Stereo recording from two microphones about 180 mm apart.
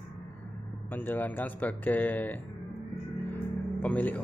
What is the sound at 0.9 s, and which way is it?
Speech, 10° left (ahead or behind).